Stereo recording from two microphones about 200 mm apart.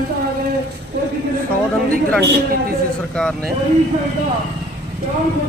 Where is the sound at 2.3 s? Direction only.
50° right (ahead or behind).